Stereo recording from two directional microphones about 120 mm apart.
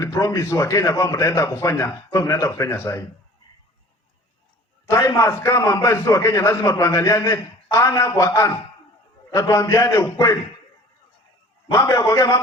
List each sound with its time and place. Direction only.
0.0 s a man's voice: 25° left (ahead or behind)
4.9 s a man's voice: 25° left (ahead or behind)
11.7 s a man's voice: 20° left (ahead or behind)